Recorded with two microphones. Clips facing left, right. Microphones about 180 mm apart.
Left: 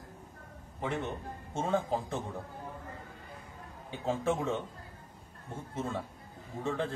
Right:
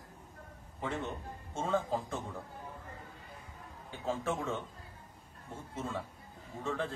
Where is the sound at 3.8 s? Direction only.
20° left (ahead or behind).